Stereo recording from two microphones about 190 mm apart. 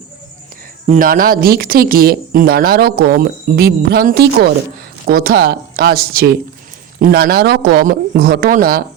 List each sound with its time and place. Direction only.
0.9 s speech: 50° right (ahead or behind)